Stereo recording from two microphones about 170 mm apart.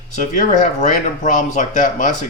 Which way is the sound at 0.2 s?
50° left (ahead or behind).